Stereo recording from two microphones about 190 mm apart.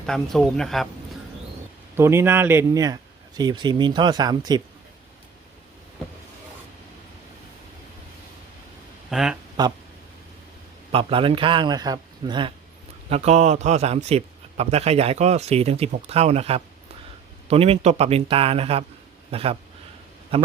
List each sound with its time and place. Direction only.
0.0 s speech: 5° left (ahead or behind)
2.0 s speech: 15° right (ahead or behind)
9.0 s speech: centre (ahead or behind)
10.9 s a man's voice: 30° right (ahead or behind)